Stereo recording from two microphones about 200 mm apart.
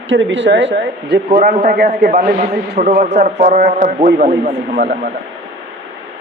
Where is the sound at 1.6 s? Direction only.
50° right (ahead or behind).